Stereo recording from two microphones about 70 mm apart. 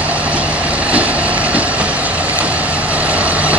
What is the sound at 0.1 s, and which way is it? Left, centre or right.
Vehicle, centre.